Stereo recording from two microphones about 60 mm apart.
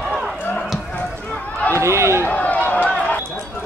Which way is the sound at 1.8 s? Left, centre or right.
Right.